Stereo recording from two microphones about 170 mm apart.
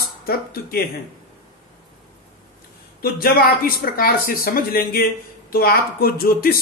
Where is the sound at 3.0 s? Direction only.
60° left (ahead or behind).